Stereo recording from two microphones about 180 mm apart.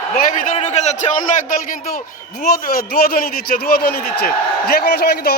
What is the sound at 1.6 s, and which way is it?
A man's voice, 55° left (ahead or behind).